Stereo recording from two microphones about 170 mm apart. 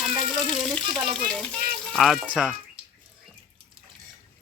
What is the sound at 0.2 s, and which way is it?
Water, 30° right (ahead or behind).